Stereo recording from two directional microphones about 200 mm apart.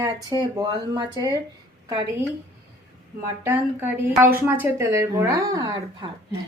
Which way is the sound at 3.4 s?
10° right (ahead or behind).